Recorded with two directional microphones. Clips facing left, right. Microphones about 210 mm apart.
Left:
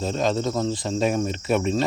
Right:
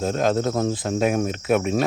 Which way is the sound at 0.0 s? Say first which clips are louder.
Right 2 dB; 50° right (ahead or behind).